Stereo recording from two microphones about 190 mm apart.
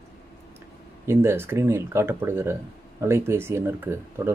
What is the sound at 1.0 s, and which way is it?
Speech, 15° right (ahead or behind).